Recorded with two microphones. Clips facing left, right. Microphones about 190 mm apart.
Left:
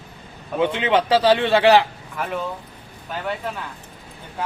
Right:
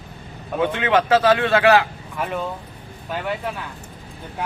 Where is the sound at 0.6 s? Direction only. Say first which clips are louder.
Even; 20° left (ahead or behind).